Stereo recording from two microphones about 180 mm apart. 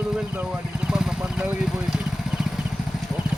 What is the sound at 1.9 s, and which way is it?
Vehicle, 5° right (ahead or behind).